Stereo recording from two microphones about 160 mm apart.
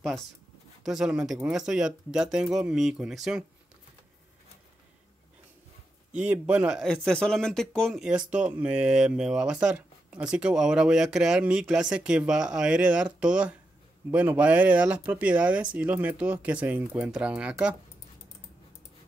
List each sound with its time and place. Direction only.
0.8 s speech: 5° right (ahead or behind)
6.1 s speech: 5° right (ahead or behind)
6.9 s speech: 5° left (ahead or behind)